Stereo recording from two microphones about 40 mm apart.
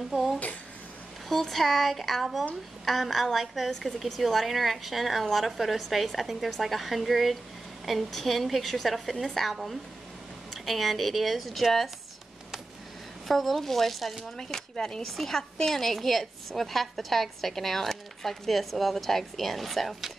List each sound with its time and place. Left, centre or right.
0.1 s a sound: centre
1.3 s a woman's voice: centre
13.3 s a woman's voice: centre
14.5 s a woman's voice: centre